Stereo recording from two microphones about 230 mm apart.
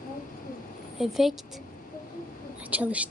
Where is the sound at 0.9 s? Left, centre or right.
Centre.